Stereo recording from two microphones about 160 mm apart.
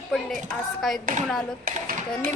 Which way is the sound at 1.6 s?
60° right (ahead or behind).